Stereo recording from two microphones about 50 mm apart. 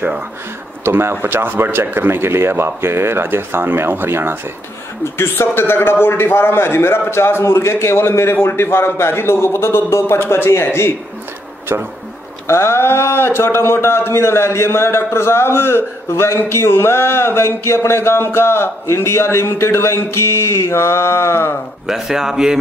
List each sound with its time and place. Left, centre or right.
0.8 s speech: right
5.0 s a man's voice: left
11.7 s speech: right
12.4 s a man's voice: left
21.8 s speech: centre